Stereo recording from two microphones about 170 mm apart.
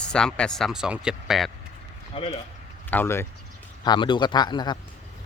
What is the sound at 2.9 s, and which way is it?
Speech, 15° left (ahead or behind).